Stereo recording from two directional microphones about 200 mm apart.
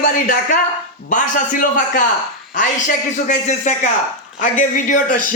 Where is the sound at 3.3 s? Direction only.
35° left (ahead or behind).